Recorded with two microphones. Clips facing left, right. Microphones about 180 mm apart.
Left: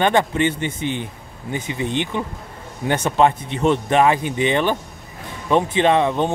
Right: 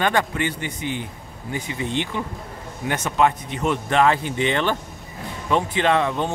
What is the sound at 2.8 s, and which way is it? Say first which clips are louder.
Speech: left 3 dB; 30° left (ahead or behind).